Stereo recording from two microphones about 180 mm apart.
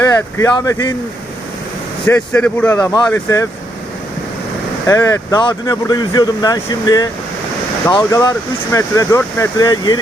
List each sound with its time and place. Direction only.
0.0 s speech: 15° left (ahead or behind)
2.0 s speech: 10° left (ahead or behind)
4.9 s speech: 20° left (ahead or behind)